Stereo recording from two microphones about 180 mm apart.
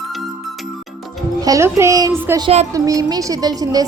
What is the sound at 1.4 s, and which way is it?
A woman's voice, 15° right (ahead or behind).